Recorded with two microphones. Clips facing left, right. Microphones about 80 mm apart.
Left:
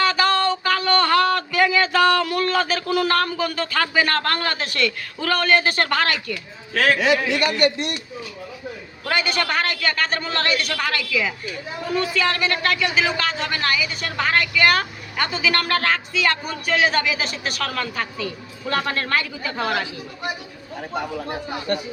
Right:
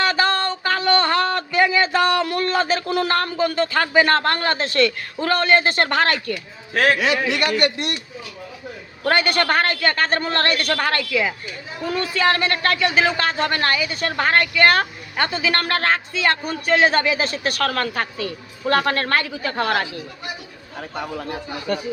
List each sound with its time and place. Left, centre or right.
0.0 s a sound: right
7.0 s a man's voice: right
9.0 s a man's voice: right